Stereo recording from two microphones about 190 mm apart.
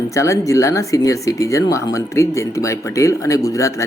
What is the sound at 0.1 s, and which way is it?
Speech, 15° left (ahead or behind).